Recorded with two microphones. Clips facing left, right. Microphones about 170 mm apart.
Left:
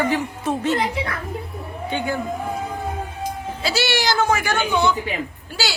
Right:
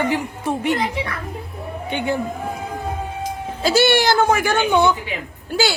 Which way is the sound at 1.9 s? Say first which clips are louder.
Right 2 dB; 25° right (ahead or behind).